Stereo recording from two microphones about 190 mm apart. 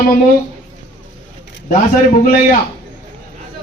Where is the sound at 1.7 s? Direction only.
45° left (ahead or behind).